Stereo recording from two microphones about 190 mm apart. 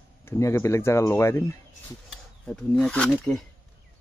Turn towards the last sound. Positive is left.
turn(degrees=5)  # may be behind; listen again after turning